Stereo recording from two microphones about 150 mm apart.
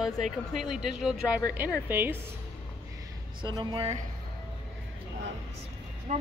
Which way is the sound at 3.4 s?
30° right (ahead or behind).